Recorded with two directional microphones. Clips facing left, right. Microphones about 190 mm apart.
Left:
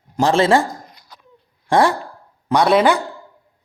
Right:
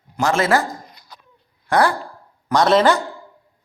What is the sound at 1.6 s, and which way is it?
Speech, 25° left (ahead or behind).